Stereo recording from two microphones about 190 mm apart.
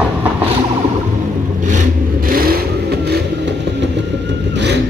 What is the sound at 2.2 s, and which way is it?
Vehicle, 50° right (ahead or behind).